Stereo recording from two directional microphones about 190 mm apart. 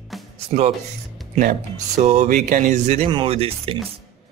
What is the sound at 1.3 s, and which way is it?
Speech, 40° right (ahead or behind).